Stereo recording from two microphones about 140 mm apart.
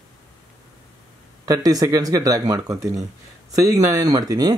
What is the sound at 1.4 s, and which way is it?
A man's voice, 25° right (ahead or behind).